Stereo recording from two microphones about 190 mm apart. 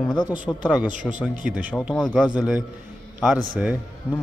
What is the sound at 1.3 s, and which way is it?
Speech, 45° right (ahead or behind).